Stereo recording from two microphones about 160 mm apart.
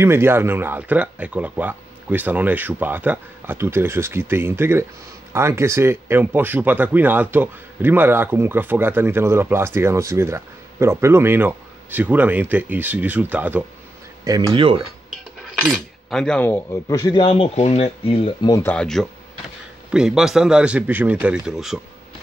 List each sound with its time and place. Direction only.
0.0 s speech: 15° right (ahead or behind)
14.2 s speech: 30° right (ahead or behind)
15.6 s speech: centre (ahead or behind)
16.9 s speech: 25° left (ahead or behind)
18.5 s a man's voice: 10° left (ahead or behind); by 21.7 s 5° right (ahead or behind)